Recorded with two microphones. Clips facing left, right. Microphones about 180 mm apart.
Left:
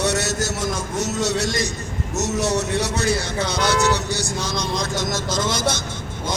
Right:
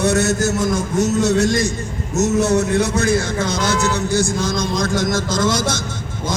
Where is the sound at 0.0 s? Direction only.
50° right (ahead or behind).